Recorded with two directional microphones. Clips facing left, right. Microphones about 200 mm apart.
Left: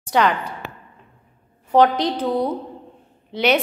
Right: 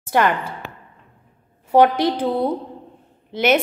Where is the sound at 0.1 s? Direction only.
5° right (ahead or behind).